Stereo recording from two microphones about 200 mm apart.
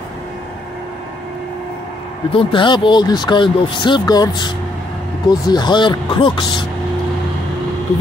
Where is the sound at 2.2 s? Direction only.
25° left (ahead or behind).